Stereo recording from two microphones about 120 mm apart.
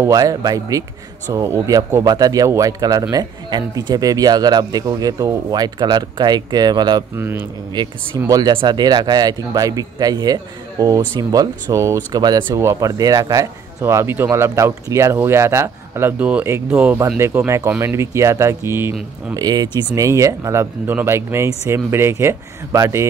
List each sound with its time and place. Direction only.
0.1 s speech: 30° right (ahead or behind)
7.2 s speech: 20° right (ahead or behind)
8.3 s speech: 35° right (ahead or behind)
19.3 s speech: 35° right (ahead or behind)